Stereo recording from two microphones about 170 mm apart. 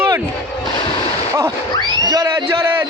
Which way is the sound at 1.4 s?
20° right (ahead or behind).